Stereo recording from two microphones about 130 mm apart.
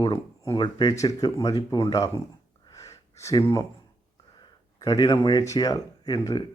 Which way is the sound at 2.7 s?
25° left (ahead or behind).